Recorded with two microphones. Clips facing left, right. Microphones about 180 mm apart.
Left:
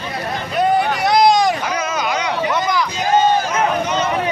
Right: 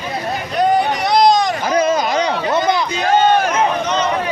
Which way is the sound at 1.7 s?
35° right (ahead or behind).